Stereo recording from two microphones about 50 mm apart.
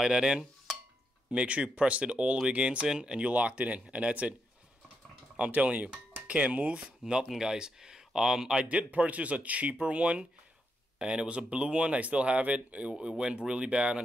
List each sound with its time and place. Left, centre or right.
0.0 s dishes: centre
1.3 s speech: right
5.5 s speech: right
7.0 s speech: centre
8.5 s speech: right